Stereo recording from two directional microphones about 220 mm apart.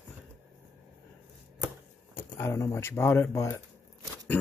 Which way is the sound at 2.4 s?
10° left (ahead or behind).